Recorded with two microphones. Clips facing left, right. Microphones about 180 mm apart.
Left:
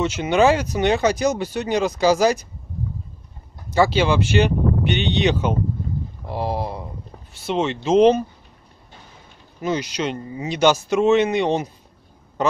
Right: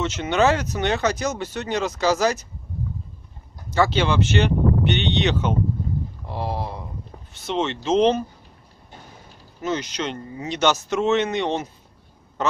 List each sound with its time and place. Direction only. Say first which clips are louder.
0.0 s speech: left 3 dB; 10° left (ahead or behind)
3.7 s speech: left 3 dB; 10° left (ahead or behind)
6.2 s a sound: left 5 dB; 15° left (ahead or behind)
7.3 s speech: left 2 dB; 10° left (ahead or behind)
9.6 s speech: left 3 dB; 10° left (ahead or behind)